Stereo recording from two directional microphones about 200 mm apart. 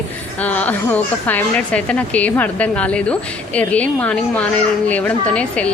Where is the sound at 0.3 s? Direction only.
10° left (ahead or behind).